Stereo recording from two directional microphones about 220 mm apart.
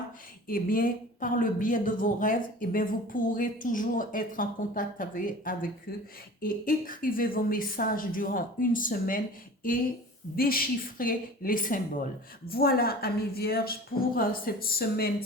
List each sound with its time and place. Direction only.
0.4 s a woman's voice: 40° left (ahead or behind)
10.3 s a woman's voice: 40° left (ahead or behind)